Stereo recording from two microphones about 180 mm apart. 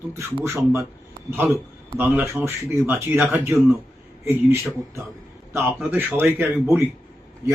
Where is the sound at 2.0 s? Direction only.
10° right (ahead or behind).